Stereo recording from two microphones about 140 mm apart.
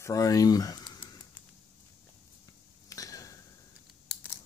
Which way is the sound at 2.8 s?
25° left (ahead or behind).